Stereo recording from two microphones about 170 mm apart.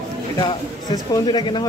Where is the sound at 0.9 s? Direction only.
25° left (ahead or behind).